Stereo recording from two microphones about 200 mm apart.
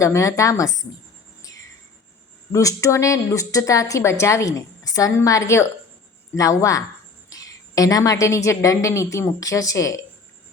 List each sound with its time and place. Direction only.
0.0 s a woman's voice: 15° left (ahead or behind)
2.5 s a woman's voice: 15° left (ahead or behind)